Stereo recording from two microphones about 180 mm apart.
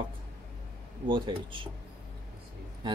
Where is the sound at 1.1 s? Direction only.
25° right (ahead or behind).